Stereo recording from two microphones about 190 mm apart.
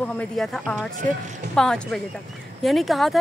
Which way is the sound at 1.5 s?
5° left (ahead or behind).